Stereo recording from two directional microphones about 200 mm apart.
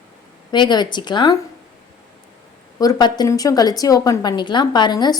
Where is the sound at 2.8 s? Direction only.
20° left (ahead or behind).